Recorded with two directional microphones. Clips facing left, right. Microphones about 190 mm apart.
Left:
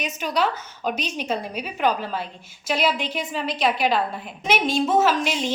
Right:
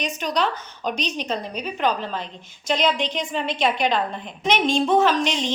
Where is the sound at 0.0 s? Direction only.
5° left (ahead or behind).